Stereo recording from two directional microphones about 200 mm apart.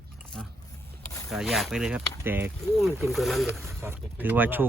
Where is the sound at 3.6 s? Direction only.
15° right (ahead or behind).